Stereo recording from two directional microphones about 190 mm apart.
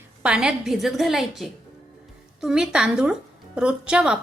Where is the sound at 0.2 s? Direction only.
5° right (ahead or behind).